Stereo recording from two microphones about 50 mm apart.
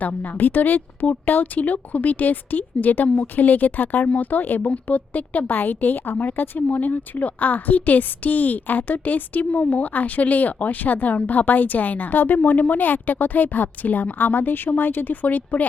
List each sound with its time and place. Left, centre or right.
0.0 s a woman's voice: left